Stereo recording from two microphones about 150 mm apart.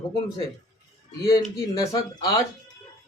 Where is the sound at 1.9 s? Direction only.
25° left (ahead or behind).